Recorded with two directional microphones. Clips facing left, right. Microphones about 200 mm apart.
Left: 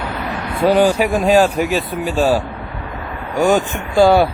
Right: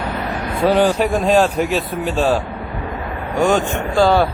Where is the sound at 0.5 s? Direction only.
Centre (ahead or behind).